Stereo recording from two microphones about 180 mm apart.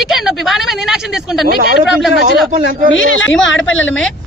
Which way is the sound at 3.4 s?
90° left.